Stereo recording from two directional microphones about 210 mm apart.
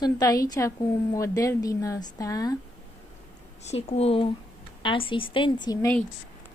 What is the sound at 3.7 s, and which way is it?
Speech, 30° left (ahead or behind).